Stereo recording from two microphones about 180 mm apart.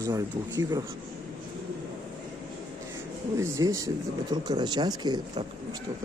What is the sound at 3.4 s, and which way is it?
Speech, 15° right (ahead or behind).